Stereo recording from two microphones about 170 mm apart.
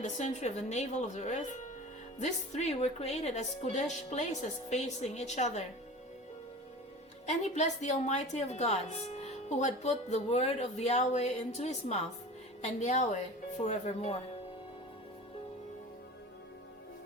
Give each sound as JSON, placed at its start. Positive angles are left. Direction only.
{"t": 0.0, "sound": "a woman's voice", "side_deg": 40}
{"t": 7.3, "sound": "a woman's voice", "side_deg": 40}